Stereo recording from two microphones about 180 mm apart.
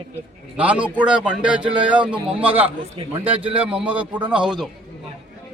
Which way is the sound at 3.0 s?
30° right (ahead or behind).